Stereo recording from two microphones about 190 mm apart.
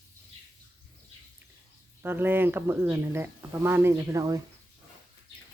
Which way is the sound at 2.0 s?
10° right (ahead or behind).